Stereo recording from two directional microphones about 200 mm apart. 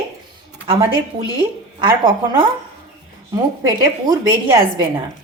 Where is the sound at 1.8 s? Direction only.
20° right (ahead or behind).